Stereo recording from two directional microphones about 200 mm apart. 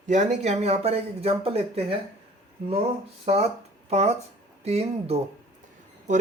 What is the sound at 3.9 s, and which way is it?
Speech, 35° right (ahead or behind).